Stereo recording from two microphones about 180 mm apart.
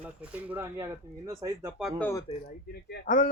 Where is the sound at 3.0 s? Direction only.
70° left (ahead or behind).